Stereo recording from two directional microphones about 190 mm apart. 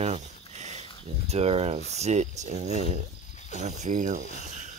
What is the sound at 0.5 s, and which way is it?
Dog, 35° right (ahead or behind).